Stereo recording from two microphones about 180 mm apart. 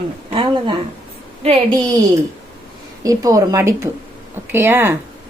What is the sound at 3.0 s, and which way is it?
A woman's voice, 20° right (ahead or behind).